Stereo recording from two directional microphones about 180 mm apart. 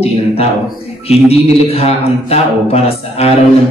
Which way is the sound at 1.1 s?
35° left (ahead or behind).